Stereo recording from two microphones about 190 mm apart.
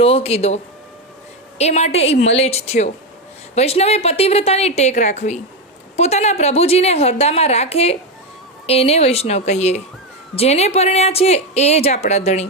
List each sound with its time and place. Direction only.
0.0 s a woman's voice: 30° left (ahead or behind)